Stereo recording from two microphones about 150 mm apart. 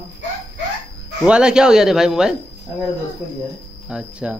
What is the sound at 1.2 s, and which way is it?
A man's voice, 5° right (ahead or behind).